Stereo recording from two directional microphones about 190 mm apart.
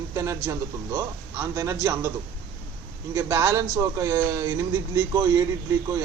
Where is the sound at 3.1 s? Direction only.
15° right (ahead or behind).